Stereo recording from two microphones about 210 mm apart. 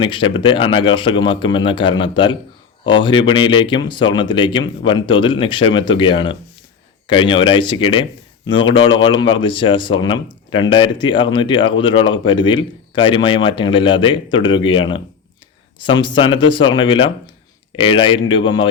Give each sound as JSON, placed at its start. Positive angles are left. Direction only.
{"t": 0.0, "sound": "speech", "side_deg": 25}